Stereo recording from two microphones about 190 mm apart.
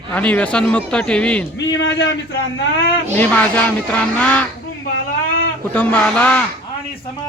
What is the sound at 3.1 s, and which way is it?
Speech, 10° left (ahead or behind).